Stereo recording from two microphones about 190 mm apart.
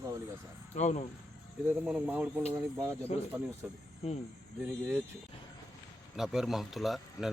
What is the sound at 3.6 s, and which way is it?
Speech, 5° right (ahead or behind).